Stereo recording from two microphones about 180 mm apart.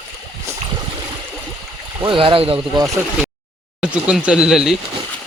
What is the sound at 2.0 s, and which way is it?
Speech, 25° right (ahead or behind).